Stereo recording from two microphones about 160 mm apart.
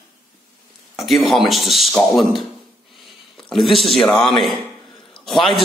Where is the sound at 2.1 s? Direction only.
Centre (ahead or behind).